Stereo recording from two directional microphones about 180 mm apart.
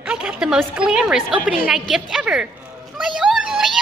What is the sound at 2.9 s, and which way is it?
Children playing, 5° right (ahead or behind).